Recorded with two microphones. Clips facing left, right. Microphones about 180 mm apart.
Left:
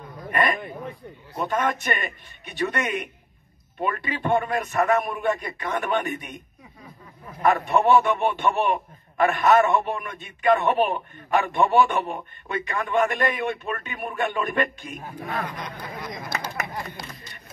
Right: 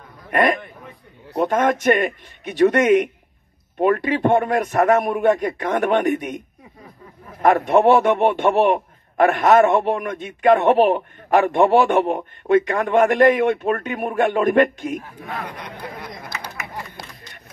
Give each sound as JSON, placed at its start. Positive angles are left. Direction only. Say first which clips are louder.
{"t": 0.3, "sound": "a man's voice", "louder": "right 5 dB", "side_deg": -90}
{"t": 7.4, "sound": "a man's voice", "louder": "right 5 dB", "side_deg": -80}